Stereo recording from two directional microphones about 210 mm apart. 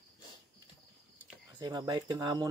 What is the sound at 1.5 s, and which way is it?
Speech, 20° right (ahead or behind).